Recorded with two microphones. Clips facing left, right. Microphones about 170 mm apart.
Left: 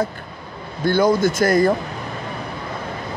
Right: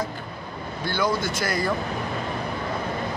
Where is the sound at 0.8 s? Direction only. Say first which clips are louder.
Left 9 dB; 50° left (ahead or behind).